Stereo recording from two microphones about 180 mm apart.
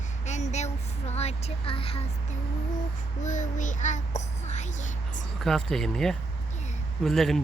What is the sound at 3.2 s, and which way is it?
A child's voice, 45° left (ahead or behind).